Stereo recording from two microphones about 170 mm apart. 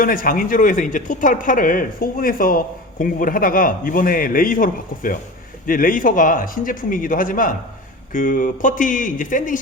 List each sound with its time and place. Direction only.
0.0 s speech: 55° left (ahead or behind)